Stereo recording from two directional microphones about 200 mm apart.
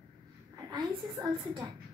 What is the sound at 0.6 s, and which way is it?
A woman's voice, 25° right (ahead or behind).